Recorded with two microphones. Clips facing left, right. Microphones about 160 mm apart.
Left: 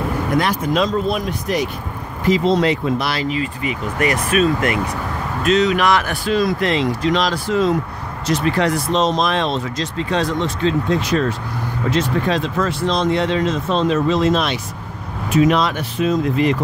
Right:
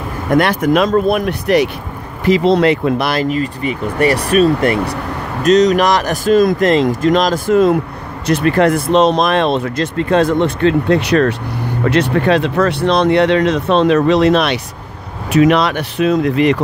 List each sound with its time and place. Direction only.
0.3 s speech: 65° right (ahead or behind); by 3.4 s 50° right (ahead or behind)
4.0 s speech: 35° right (ahead or behind); by 16.5 s 70° right (ahead or behind)